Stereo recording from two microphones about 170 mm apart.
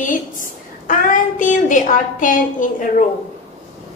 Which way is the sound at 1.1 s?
50° left (ahead or behind).